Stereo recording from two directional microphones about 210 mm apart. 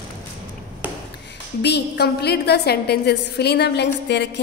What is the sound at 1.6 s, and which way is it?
A woman's voice, 55° left (ahead or behind).